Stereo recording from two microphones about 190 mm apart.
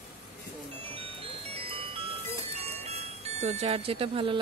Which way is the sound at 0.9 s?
30° right (ahead or behind).